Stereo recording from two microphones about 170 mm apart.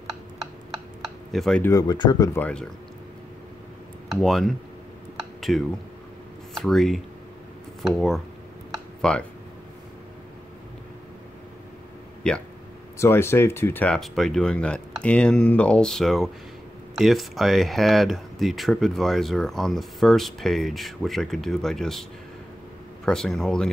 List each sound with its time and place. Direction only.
1.0 s a sound: centre (ahead or behind)
1.6 s speech: 20° left (ahead or behind)
4.1 s speech: centre (ahead or behind)
12.2 s speech: 5° left (ahead or behind)
23.0 s speech: 5° left (ahead or behind)